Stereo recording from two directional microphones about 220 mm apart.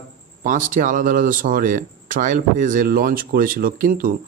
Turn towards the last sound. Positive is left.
turn(degrees=-40)  # may be behind; listen again after turning